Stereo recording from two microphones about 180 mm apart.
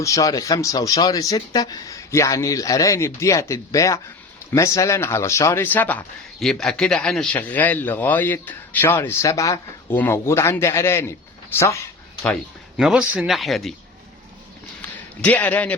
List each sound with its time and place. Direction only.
0.0 s speech: 20° left (ahead or behind)
12.7 s speech: 5° right (ahead or behind)
14.8 s a sound: 10° left (ahead or behind)